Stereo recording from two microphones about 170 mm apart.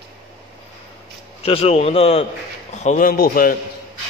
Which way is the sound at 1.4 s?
35° left (ahead or behind).